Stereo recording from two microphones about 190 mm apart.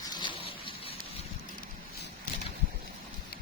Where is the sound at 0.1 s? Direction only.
25° left (ahead or behind).